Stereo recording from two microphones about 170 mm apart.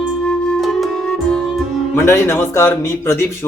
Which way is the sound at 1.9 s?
15° left (ahead or behind).